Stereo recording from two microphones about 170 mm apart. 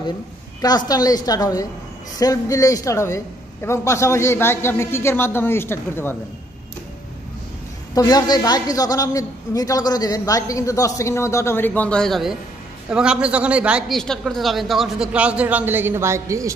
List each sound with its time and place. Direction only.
0.6 s a woman's voice: 20° left (ahead or behind)
7.9 s a woman's voice: 20° left (ahead or behind); by 16.5 s 20° right (ahead or behind)